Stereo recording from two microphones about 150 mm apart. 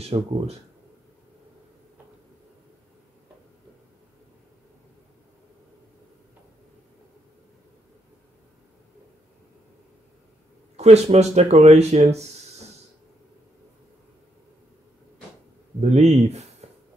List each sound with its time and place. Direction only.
0.0 s speech: 45° right (ahead or behind)
10.8 s speech: 45° right (ahead or behind)
15.8 s speech: 45° right (ahead or behind)